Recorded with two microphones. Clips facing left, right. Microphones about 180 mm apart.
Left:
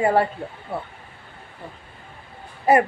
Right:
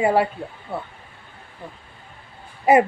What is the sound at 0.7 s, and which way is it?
Speech, 5° left (ahead or behind).